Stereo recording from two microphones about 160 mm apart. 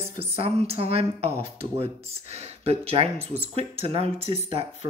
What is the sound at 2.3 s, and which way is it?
Speech, 40° right (ahead or behind).